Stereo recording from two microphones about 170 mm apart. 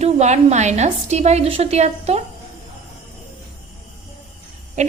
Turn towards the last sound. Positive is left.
turn(degrees=-40)  # may be behind; listen again after turning